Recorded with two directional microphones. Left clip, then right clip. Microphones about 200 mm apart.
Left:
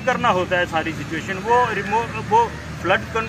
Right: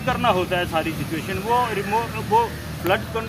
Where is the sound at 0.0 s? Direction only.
Centre (ahead or behind).